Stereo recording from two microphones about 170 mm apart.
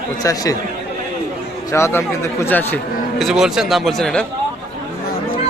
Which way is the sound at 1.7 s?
15° left (ahead or behind).